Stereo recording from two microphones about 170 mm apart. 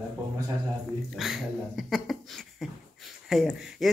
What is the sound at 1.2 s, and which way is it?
Dog, centre (ahead or behind).